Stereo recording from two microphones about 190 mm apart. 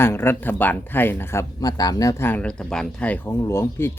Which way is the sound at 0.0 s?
10° left (ahead or behind).